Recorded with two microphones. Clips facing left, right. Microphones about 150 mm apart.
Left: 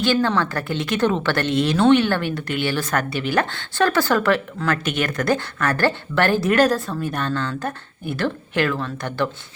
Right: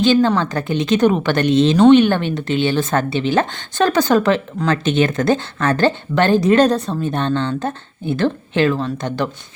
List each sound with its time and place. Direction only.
0.0 s a woman's voice: 20° right (ahead or behind)